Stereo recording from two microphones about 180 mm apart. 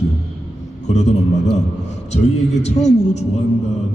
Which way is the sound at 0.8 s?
40° left (ahead or behind).